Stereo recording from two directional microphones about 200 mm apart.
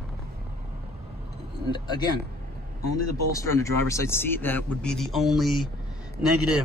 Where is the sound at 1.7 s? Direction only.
20° left (ahead or behind).